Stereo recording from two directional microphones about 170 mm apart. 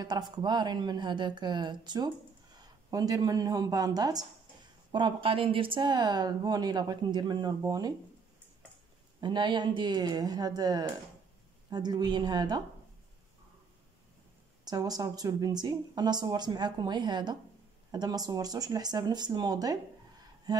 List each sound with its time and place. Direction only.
0.0 s a woman's voice: 25° right (ahead or behind)
9.2 s a woman's voice: 25° right (ahead or behind)
14.6 s a woman's voice: 20° right (ahead or behind)
20.5 s a sound: 25° right (ahead or behind)